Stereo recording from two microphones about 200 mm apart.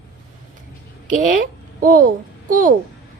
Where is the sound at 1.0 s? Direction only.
40° right (ahead or behind).